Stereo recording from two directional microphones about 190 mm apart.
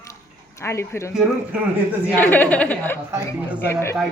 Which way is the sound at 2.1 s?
10° left (ahead or behind).